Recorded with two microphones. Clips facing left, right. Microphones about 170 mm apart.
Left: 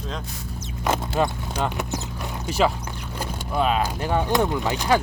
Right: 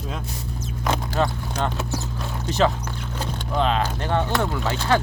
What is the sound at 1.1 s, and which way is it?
Speech, 15° left (ahead or behind).